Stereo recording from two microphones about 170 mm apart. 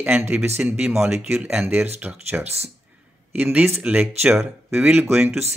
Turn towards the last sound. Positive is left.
turn(degrees=-10)  # may be behind; listen again after turning